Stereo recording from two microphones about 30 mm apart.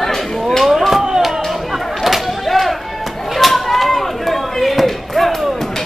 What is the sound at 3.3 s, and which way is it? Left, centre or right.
Chop, centre.